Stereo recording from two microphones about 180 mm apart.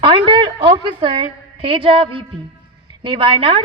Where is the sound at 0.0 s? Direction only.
30° right (ahead or behind).